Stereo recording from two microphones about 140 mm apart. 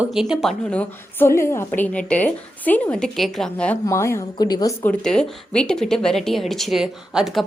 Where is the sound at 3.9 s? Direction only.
20° left (ahead or behind).